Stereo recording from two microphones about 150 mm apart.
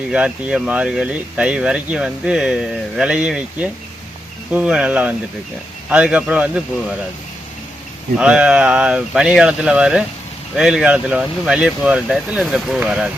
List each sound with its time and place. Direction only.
0.1 s speech: 5° right (ahead or behind)
8.2 s speech: 5° right (ahead or behind)